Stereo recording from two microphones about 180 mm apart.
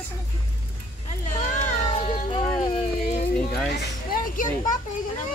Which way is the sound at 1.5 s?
40° left (ahead or behind).